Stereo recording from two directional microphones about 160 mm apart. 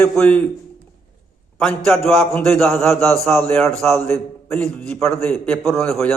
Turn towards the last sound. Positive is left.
turn(degrees=0)  # may be behind; listen again after turning